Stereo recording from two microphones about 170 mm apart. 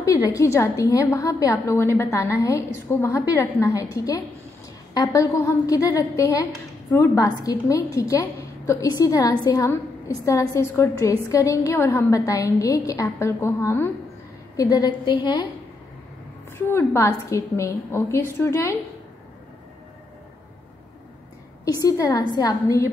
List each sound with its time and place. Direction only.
0.0 s a woman's voice: 20° left (ahead or behind)
16.5 s a woman's voice: 15° left (ahead or behind)
21.6 s a woman's voice: 20° left (ahead or behind)